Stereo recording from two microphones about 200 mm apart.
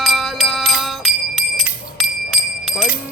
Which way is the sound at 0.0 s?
Centre (ahead or behind).